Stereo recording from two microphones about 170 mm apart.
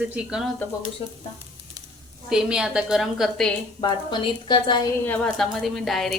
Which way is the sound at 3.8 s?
25° left (ahead or behind).